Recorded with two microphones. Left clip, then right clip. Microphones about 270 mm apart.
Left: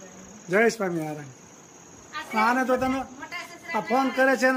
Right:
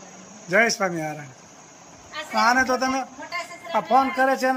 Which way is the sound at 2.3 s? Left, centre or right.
Centre.